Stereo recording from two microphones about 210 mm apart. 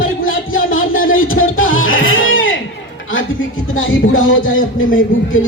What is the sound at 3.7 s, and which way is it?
Speech, 65° left (ahead or behind).